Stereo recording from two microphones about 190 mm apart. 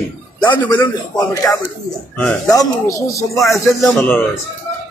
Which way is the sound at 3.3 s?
Centre (ahead or behind).